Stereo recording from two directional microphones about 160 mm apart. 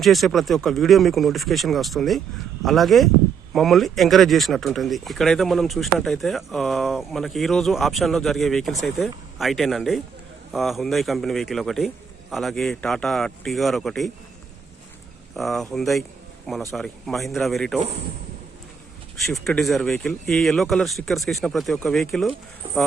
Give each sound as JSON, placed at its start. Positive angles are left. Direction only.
{"t": 0.0, "sound": "speech", "side_deg": 0}
{"t": 15.4, "sound": "speech", "side_deg": 0}
{"t": 19.2, "sound": "speech", "side_deg": 0}
{"t": 22.6, "sound": "speech", "side_deg": -35}